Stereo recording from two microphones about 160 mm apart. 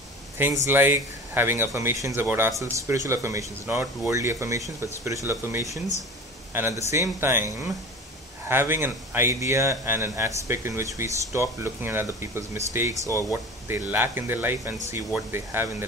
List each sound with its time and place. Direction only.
0.7 s speech: 10° right (ahead or behind)